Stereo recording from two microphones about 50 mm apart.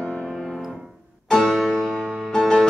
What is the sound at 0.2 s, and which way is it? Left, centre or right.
Piano, centre.